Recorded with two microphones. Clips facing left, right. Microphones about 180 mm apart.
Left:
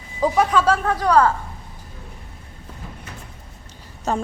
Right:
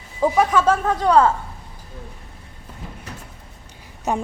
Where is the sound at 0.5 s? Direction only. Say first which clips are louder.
Right 1 dB; 20° right (ahead or behind).